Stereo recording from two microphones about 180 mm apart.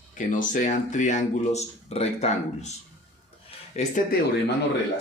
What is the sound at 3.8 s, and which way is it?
Speech, 45° left (ahead or behind).